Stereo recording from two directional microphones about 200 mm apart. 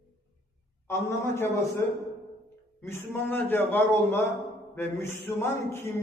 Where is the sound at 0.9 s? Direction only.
10° left (ahead or behind).